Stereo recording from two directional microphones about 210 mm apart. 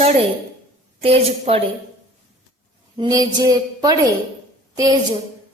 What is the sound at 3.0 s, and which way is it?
Speech, 15° right (ahead or behind).